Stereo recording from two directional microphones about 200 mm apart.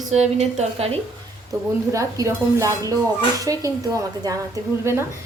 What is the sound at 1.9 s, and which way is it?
Speech, 15° right (ahead or behind).